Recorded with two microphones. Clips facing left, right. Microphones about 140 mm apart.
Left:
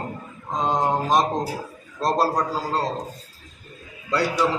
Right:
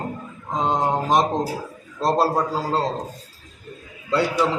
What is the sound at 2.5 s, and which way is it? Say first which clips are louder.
Speech: right 2 dB; 25° right (ahead or behind).